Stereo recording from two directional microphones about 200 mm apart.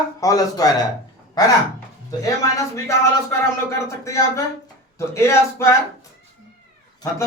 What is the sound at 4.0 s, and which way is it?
Speech, 15° left (ahead or behind).